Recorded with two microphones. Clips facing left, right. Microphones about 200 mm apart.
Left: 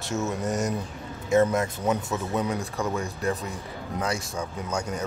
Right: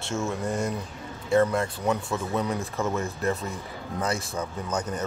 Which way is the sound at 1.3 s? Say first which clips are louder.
Left 1 dB; 20° left (ahead or behind).